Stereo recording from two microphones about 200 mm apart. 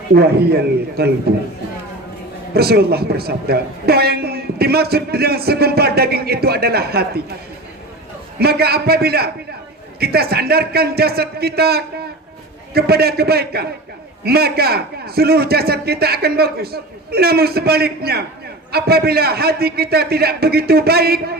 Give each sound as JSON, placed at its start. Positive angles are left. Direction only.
{"t": 0.1, "sound": "a man's voice", "side_deg": -50}
{"t": 2.5, "sound": "a man's voice", "side_deg": -50}
{"t": 8.4, "sound": "a man's voice", "side_deg": -50}